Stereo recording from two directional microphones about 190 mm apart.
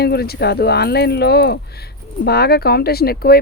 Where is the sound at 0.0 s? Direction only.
55° left (ahead or behind).